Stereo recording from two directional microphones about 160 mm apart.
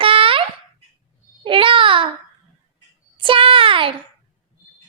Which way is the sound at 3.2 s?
30° right (ahead or behind).